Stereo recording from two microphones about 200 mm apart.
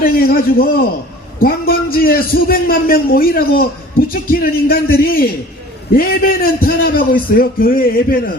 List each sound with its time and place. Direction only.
0.0 s a man's voice: 45° left (ahead or behind)